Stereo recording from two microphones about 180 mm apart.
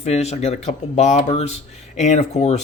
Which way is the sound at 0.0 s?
35° left (ahead or behind).